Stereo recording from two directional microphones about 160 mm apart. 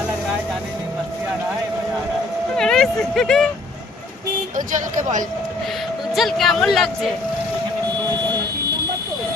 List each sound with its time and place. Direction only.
2.6 s a sound: 5° left (ahead or behind)
4.5 s speech: 50° right (ahead or behind)
6.1 s speech: centre (ahead or behind)